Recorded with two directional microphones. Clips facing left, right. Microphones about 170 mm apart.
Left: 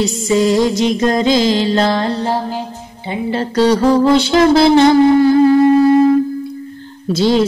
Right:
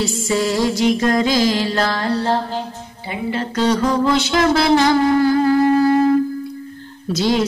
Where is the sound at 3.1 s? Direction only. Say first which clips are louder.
Left 4 dB; 30° left (ahead or behind).